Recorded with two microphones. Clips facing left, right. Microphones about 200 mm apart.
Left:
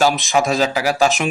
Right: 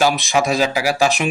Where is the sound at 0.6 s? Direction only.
10° right (ahead or behind).